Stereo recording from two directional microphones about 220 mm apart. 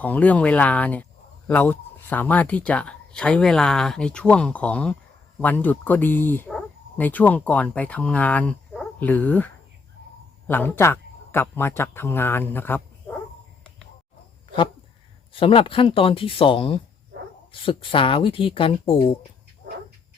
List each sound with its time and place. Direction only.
0.0 s speech: 5° left (ahead or behind)
15.3 s speech: 25° left (ahead or behind)